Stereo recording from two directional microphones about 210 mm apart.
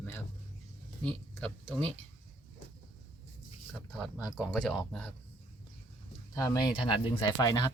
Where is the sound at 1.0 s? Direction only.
5° left (ahead or behind).